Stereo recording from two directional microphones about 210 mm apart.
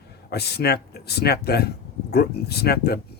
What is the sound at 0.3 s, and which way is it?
Speech, 50° left (ahead or behind).